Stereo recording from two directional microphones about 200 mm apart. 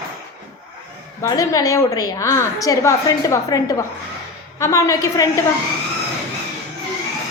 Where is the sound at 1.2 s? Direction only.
15° left (ahead or behind).